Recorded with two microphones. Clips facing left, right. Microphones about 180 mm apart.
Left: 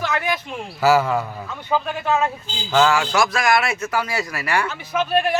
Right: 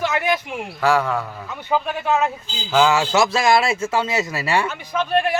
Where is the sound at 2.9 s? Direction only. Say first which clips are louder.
Right 2 dB; 25° right (ahead or behind).